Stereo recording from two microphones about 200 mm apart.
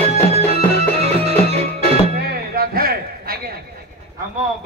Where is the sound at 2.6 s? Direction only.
50° right (ahead or behind).